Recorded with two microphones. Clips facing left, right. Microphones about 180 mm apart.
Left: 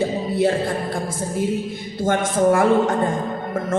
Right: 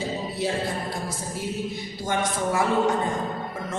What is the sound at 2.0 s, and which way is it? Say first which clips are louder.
Speech: left 9 dB; 50° left (ahead or behind).